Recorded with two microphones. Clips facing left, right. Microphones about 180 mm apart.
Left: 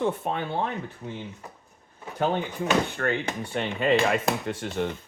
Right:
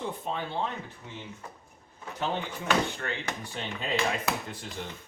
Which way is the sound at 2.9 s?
55° left (ahead or behind).